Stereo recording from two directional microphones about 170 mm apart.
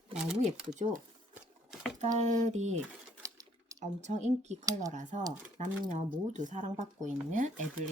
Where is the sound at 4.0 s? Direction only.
45° right (ahead or behind).